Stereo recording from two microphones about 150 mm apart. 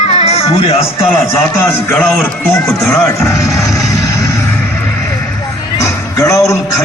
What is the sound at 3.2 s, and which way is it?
Music, 20° left (ahead or behind).